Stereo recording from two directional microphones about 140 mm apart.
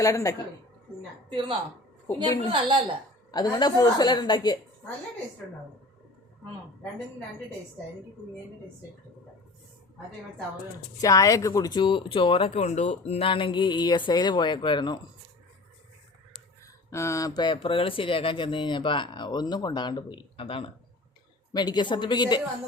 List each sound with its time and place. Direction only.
0.0 s a woman's voice: 25° left (ahead or behind)
1.3 s a woman's voice: 35° right (ahead or behind)
3.3 s a woman's voice: 30° left (ahead or behind)
11.0 s speech: 25° left (ahead or behind)
16.9 s speech: 20° left (ahead or behind); by 20.7 s 40° left (ahead or behind)
21.5 s speech: 30° left (ahead or behind)